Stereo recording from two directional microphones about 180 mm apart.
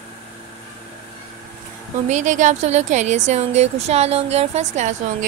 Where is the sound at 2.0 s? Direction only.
45° right (ahead or behind).